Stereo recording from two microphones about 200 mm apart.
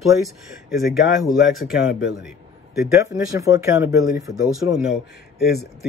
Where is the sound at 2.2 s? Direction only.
Centre (ahead or behind).